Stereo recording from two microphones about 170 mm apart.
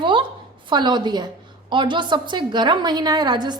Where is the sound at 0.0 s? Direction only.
30° right (ahead or behind).